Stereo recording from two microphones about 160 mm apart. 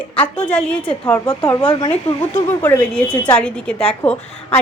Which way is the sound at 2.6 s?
10° left (ahead or behind).